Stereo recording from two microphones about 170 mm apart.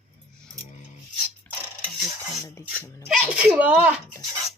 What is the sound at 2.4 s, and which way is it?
Speech, 15° left (ahead or behind).